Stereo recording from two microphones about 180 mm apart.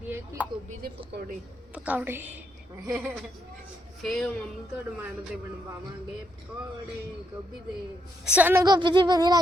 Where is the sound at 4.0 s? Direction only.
Centre (ahead or behind).